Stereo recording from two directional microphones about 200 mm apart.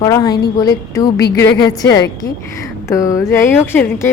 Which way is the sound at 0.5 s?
20° left (ahead or behind).